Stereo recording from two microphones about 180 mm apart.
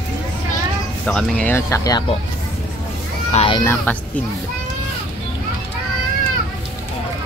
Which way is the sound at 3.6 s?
10° left (ahead or behind).